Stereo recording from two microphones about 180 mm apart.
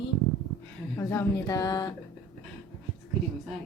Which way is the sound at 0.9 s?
20° left (ahead or behind).